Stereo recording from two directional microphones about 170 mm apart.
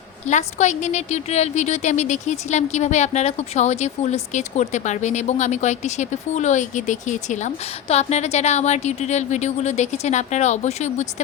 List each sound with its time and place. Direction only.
0.3 s a woman's voice: 45° left (ahead or behind)